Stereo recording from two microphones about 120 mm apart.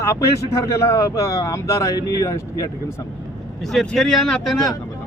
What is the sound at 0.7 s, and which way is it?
Speech, 25° left (ahead or behind).